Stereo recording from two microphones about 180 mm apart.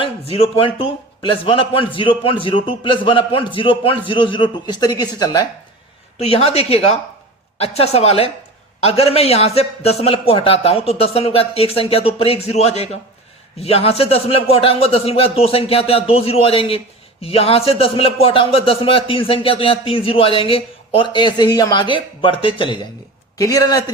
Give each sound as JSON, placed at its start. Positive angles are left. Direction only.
{"t": 0.0, "sound": "a man's voice", "side_deg": 30}
{"t": 6.1, "sound": "a man's voice", "side_deg": 35}